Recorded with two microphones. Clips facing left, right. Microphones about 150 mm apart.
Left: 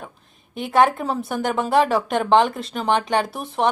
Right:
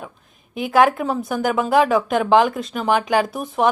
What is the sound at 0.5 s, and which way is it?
A woman's voice, centre (ahead or behind).